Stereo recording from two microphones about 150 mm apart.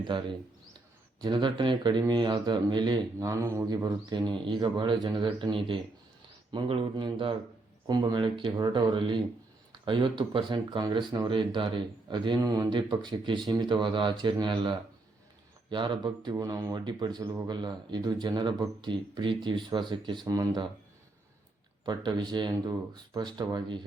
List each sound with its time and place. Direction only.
0.1 s a man's voice: 35° right (ahead or behind)
16.3 s speech: 20° right (ahead or behind)
21.8 s speech: 30° right (ahead or behind)